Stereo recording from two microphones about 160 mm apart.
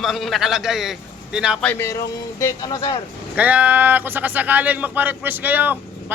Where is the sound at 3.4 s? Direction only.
10° right (ahead or behind).